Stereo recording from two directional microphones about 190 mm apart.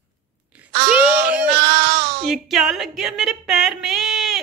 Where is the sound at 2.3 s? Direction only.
Centre (ahead or behind).